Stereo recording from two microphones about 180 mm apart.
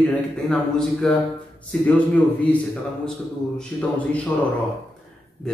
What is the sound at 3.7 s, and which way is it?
Speech, 5° left (ahead or behind).